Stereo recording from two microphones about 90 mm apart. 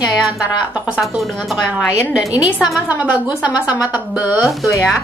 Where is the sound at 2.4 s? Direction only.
10° right (ahead or behind).